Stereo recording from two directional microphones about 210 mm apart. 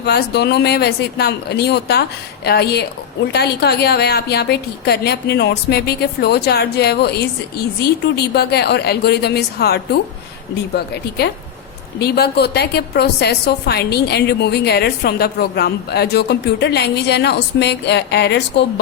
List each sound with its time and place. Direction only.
0.0 s a woman's voice: 50° left (ahead or behind)
11.9 s a woman's voice: 50° left (ahead or behind)